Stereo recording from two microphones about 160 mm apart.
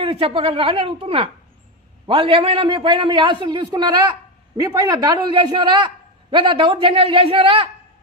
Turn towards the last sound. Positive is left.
turn(degrees=-35)  # may be behind; listen again after turning